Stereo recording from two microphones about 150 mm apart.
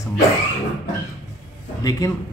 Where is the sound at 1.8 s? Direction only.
25° left (ahead or behind).